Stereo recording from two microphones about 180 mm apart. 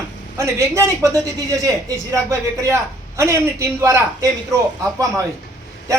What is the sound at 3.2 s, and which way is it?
A woman's voice, 15° right (ahead or behind).